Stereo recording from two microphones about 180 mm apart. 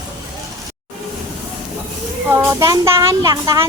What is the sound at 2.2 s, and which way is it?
Speech, 15° right (ahead or behind).